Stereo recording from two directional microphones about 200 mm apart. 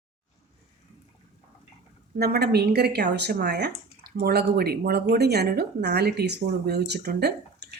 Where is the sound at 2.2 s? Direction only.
50° right (ahead or behind).